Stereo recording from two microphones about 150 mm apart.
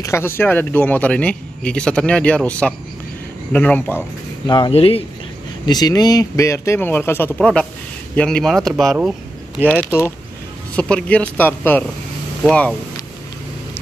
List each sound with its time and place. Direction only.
0.0 s speech: 15° left (ahead or behind)
4.5 s speech: 35° left (ahead or behind)
5.7 s speech: 25° left (ahead or behind); by 9.1 s 5° right (ahead or behind)
9.7 s speech: 10° left (ahead or behind)